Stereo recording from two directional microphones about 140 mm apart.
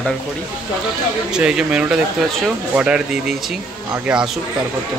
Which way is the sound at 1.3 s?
5° right (ahead or behind).